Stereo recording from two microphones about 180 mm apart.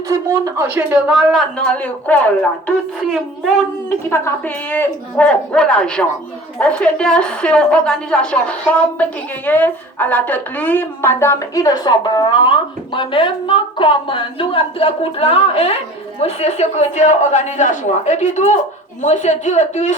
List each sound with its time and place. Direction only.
0.1 s a woman's voice: 15° right (ahead or behind); by 20.0 s 40° left (ahead or behind)